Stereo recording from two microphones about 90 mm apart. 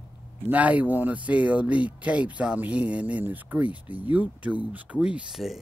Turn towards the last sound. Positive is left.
turn(degrees=-10)  # may be behind; listen again after turning